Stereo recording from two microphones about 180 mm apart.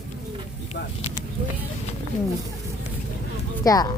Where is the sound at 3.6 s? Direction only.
20° left (ahead or behind).